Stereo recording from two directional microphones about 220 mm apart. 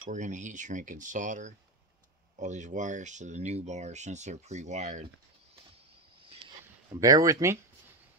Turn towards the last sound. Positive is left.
turn(degrees=-15)  # may be behind; listen again after turning